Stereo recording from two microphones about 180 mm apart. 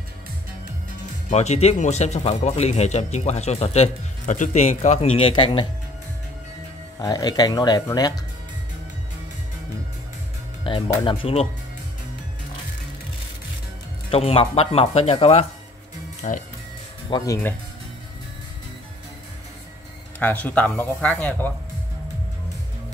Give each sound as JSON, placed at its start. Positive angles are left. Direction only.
{"t": 1.3, "sound": "speech", "side_deg": 40}
{"t": 7.0, "sound": "speech", "side_deg": 20}
{"t": 10.6, "sound": "speech", "side_deg": 30}
{"t": 14.1, "sound": "speech", "side_deg": 30}
{"t": 16.2, "sound": "speech", "side_deg": 45}
{"t": 17.1, "sound": "speech", "side_deg": 25}
{"t": 20.2, "sound": "speech", "side_deg": 10}